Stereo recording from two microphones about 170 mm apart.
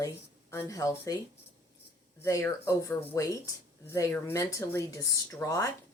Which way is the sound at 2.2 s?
15° left (ahead or behind).